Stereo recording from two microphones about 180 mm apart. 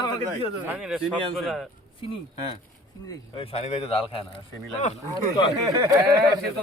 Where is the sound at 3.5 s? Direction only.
35° left (ahead or behind).